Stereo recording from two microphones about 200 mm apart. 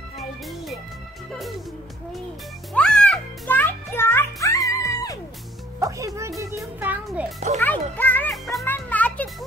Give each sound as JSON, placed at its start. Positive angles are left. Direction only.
{"t": 2.7, "sound": "music", "side_deg": 5}
{"t": 5.8, "sound": "music", "side_deg": -15}
{"t": 6.5, "sound": "a child's voice", "side_deg": -5}
{"t": 7.3, "sound": "a child's voice", "side_deg": -35}
{"t": 7.6, "sound": "music", "side_deg": 10}